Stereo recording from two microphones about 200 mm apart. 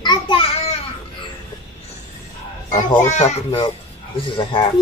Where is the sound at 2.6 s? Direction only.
35° left (ahead or behind).